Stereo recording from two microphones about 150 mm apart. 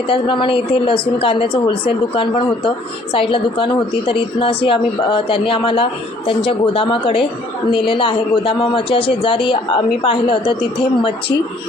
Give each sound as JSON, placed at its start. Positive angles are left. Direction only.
{"t": 0.1, "sound": "a woman's voice", "side_deg": 35}